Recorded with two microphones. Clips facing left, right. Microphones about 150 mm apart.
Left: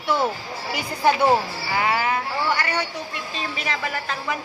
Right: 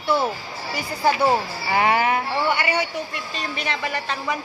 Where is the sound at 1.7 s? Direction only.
25° right (ahead or behind).